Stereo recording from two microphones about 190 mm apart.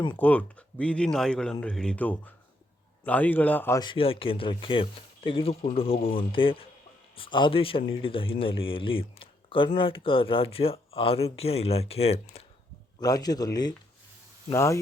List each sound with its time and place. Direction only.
0.1 s speech: 10° left (ahead or behind)
3.8 s speech: 25° left (ahead or behind)
13.0 s speech: 20° left (ahead or behind)